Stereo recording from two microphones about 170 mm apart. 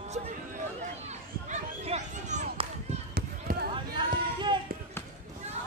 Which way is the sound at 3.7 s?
30° right (ahead or behind).